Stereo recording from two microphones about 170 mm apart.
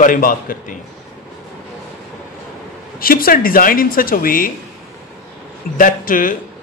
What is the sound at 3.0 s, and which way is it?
Speech, 60° left (ahead or behind).